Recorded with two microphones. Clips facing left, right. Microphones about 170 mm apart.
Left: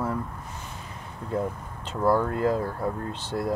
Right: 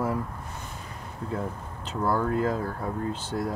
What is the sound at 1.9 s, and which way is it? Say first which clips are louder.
Speech: left 2 dB; centre (ahead or behind).